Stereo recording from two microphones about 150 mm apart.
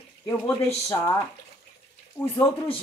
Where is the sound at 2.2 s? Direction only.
15° left (ahead or behind).